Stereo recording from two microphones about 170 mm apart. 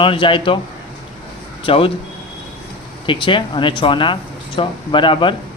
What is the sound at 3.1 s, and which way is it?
Speech, 30° left (ahead or behind).